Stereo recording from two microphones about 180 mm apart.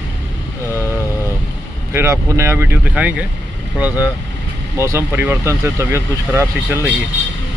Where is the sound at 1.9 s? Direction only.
15° right (ahead or behind).